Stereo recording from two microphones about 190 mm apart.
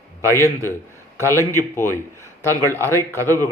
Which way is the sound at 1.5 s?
15° left (ahead or behind).